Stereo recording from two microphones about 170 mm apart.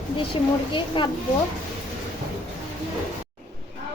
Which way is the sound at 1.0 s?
30° left (ahead or behind).